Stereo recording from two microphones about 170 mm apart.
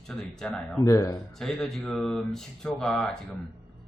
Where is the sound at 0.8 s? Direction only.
20° left (ahead or behind).